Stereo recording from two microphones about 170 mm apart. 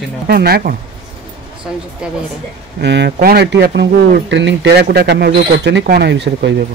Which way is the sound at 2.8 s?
85° right.